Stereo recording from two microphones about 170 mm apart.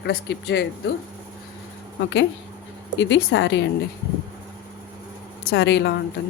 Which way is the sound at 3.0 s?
90° left.